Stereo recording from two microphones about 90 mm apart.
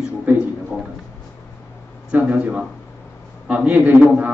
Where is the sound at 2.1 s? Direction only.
15° right (ahead or behind).